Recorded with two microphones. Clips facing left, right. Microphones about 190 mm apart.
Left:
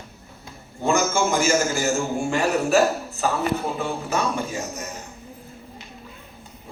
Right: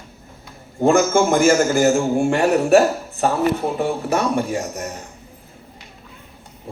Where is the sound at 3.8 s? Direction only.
60° right (ahead or behind).